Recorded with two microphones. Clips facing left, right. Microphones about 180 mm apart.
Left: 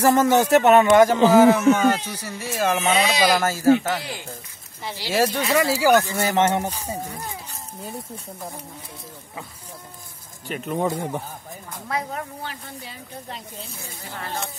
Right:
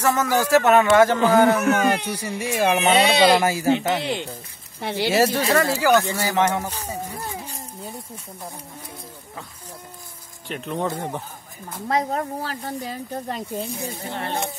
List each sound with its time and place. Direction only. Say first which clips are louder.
0.0 s speech: left 4 dB; 30° left (ahead or behind)
1.3 s speech: left 5 dB; 5° left (ahead or behind)
2.0 s speech: right 5 dB; 15° right (ahead or behind)
2.9 s speech: right 4 dB; 30° right (ahead or behind)
3.4 s speech: left 2 dB; 15° right (ahead or behind)
4.7 s speech: right 8 dB; 60° right (ahead or behind)
5.1 s speech: right 1 dB; 10° right (ahead or behind)
5.5 s speech: left 3 dB; 10° left (ahead or behind)
6.1 s speech: left 1 dB; 20° left (ahead or behind)
10.5 s speech: left 2 dB; 5° left (ahead or behind)
11.9 s speech: right 6 dB; 35° right (ahead or behind)
13.7 s speech: right 7 dB; 20° right (ahead or behind)